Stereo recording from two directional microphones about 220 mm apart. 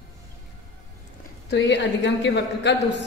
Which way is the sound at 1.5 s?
50° left (ahead or behind).